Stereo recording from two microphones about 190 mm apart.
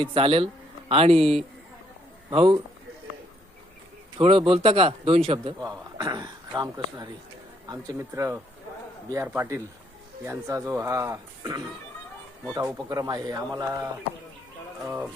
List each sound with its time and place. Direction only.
0.0 s speech: 25° right (ahead or behind)
1.2 s a man's voice: centre (ahead or behind)
2.3 s speech: 30° right (ahead or behind)
4.2 s speech: 30° right (ahead or behind)
14.8 s speech: 10° right (ahead or behind)